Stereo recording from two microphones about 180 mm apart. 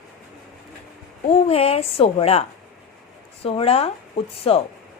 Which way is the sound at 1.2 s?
35° left (ahead or behind).